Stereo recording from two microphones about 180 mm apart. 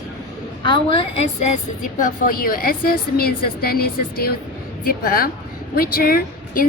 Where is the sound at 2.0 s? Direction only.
50° left (ahead or behind).